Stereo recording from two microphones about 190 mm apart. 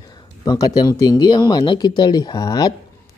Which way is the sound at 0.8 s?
20° left (ahead or behind).